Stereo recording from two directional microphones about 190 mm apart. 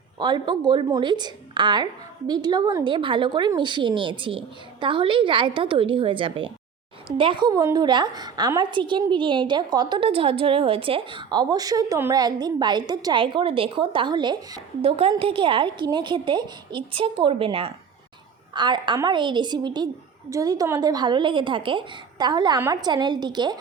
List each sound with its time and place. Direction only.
0.2 s a woman's voice: 25° right (ahead or behind)